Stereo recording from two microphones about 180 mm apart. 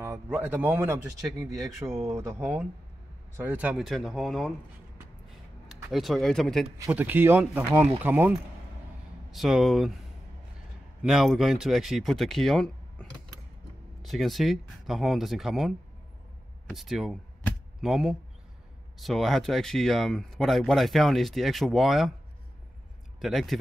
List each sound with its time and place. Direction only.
0.0 s speech: 15° right (ahead or behind)
1.5 s speech: centre (ahead or behind)
1.9 s speech: 15° right (ahead or behind)
5.7 s speech: centre (ahead or behind)
6.9 s speech: 10° right (ahead or behind)
11.0 s speech: centre (ahead or behind)
23.2 s speech: centre (ahead or behind)